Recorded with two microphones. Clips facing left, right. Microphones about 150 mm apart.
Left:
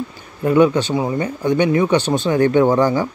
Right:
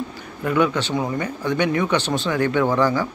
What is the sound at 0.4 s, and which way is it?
Speech, 30° left (ahead or behind).